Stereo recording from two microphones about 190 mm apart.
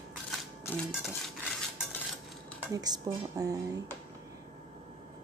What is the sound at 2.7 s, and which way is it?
Dishes, 20° right (ahead or behind).